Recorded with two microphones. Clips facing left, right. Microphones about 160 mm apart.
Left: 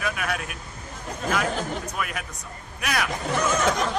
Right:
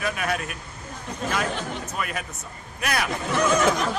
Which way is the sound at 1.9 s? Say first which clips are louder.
Right 1 dB; centre (ahead or behind).